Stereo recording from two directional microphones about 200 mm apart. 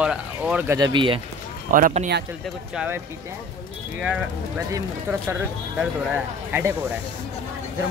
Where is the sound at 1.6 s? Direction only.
40° right (ahead or behind).